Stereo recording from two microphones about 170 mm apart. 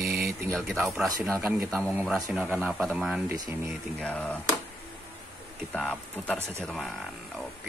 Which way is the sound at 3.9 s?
5° left (ahead or behind).